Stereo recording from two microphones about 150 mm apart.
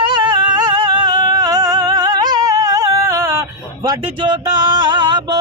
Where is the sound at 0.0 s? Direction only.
30° right (ahead or behind).